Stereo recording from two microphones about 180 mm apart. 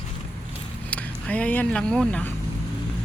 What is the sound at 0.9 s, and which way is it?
Speech, 10° left (ahead or behind).